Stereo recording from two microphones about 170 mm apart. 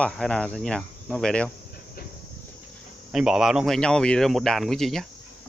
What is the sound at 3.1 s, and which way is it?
Speech, 5° right (ahead or behind).